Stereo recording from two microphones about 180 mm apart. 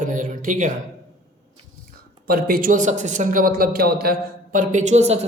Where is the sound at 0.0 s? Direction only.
45° right (ahead or behind).